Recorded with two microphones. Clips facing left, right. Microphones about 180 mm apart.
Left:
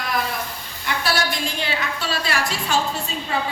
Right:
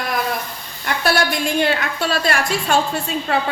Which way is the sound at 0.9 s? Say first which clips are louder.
Right 3 dB; 50° right (ahead or behind).